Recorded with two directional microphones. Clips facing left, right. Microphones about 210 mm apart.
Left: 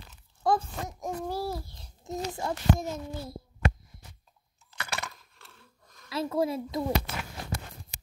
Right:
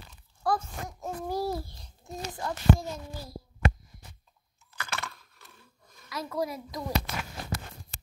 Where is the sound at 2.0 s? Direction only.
20° left (ahead or behind).